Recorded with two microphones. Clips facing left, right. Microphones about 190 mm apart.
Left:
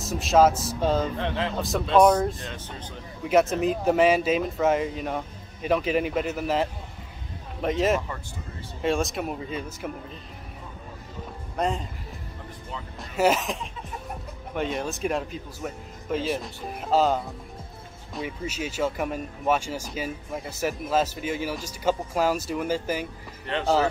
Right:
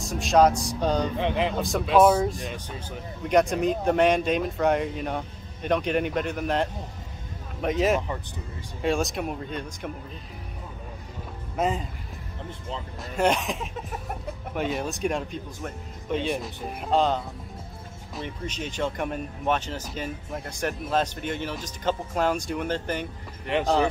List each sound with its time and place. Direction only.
0.0 s speech: centre (ahead or behind)
1.1 s speech: 15° right (ahead or behind)
1.6 s speech: centre (ahead or behind)
2.3 s speech: 15° right (ahead or behind)
3.3 s speech: 5° left (ahead or behind)
11.5 s speech: centre (ahead or behind)
13.1 s speech: 5° left (ahead or behind)
23.4 s speech: 15° right (ahead or behind)